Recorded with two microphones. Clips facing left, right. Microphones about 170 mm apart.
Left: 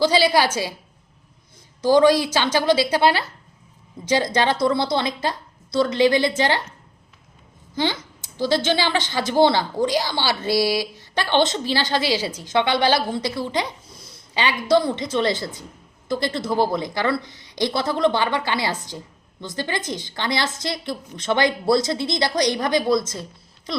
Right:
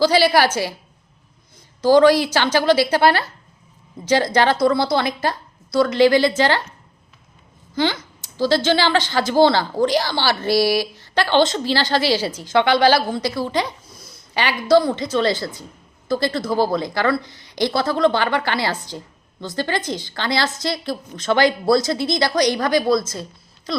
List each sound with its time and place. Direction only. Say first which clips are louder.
0.0 s speech: right 2 dB; 20° left (ahead or behind)
1.9 s speech: right 2 dB; 20° left (ahead or behind)
7.8 s a woman's voice: right 3 dB; 20° left (ahead or behind)